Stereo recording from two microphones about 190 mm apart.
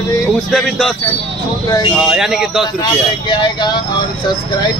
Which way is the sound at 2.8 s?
25° left (ahead or behind).